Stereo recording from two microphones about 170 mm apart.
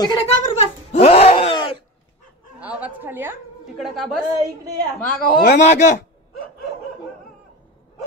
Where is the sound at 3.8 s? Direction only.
Centre (ahead or behind).